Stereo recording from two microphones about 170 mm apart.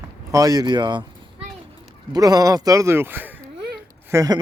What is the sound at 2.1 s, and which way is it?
Speech, 20° right (ahead or behind).